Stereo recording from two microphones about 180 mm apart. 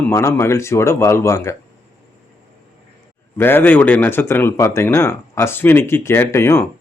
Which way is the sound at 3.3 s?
10° left (ahead or behind).